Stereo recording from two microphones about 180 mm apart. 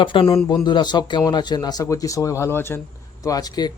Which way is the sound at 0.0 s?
30° left (ahead or behind).